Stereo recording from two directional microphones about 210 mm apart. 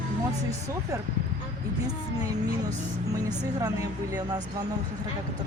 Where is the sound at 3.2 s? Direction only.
15° right (ahead or behind).